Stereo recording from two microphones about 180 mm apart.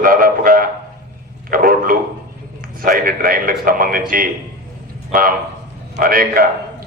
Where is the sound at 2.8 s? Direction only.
50° right (ahead or behind).